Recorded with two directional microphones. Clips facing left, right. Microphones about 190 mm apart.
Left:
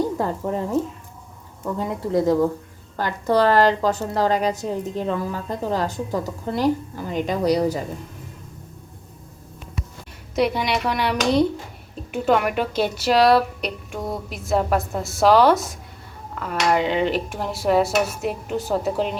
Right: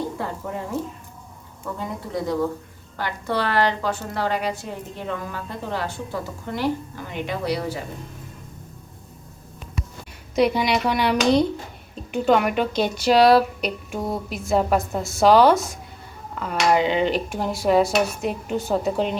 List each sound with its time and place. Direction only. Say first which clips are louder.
0.2 s a woman's voice: left 5 dB; 35° left (ahead or behind)
2.1 s a woman's voice: left 6 dB; 45° left (ahead or behind)
10.3 s speech: right 2 dB; centre (ahead or behind)
16.3 s a sound: even; centre (ahead or behind)
16.6 s speech: right 1 dB; 5° right (ahead or behind)